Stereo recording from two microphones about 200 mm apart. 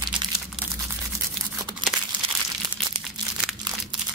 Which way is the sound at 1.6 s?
20° right (ahead or behind).